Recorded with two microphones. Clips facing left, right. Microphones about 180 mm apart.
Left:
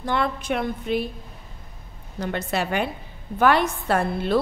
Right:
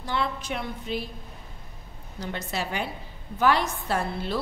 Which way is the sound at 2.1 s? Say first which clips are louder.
Left 6 dB; 60° left (ahead or behind).